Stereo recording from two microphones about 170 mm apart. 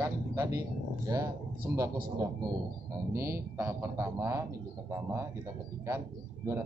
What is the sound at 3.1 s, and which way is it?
A man's voice, 15° right (ahead or behind).